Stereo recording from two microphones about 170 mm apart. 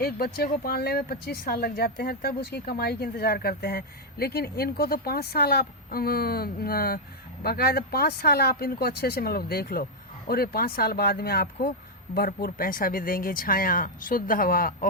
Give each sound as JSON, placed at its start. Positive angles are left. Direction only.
{"t": 0.0, "sound": "speech", "side_deg": 65}